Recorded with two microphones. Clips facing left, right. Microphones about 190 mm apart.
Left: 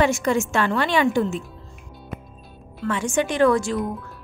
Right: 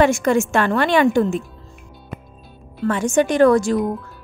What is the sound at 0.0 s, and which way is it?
A woman's voice, 50° right (ahead or behind).